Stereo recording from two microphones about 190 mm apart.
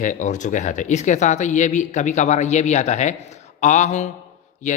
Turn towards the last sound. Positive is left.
turn(degrees=40)  # may be behind; listen again after turning